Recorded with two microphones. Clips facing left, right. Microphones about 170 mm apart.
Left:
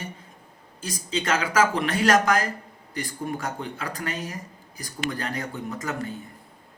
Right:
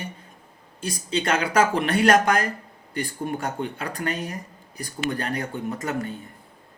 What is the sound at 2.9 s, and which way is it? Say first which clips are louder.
Speech: right 2 dB; 30° right (ahead or behind).